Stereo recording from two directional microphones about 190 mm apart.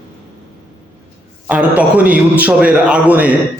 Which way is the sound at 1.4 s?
5° right (ahead or behind).